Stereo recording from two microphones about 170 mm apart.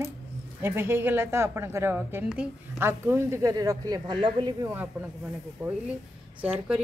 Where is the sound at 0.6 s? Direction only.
15° right (ahead or behind).